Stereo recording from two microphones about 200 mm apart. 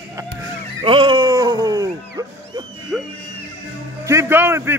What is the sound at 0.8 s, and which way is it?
Music, 25° right (ahead or behind).